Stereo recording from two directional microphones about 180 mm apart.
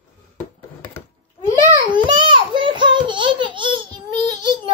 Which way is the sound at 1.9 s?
25° right (ahead or behind).